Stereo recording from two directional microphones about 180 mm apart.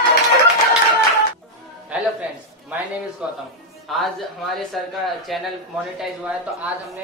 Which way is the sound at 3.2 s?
5° right (ahead or behind).